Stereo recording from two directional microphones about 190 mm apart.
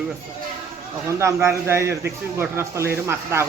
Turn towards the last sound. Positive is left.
turn(degrees=-15)  # may be behind; listen again after turning